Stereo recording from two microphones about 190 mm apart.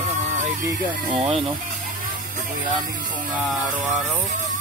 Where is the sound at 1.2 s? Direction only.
30° right (ahead or behind).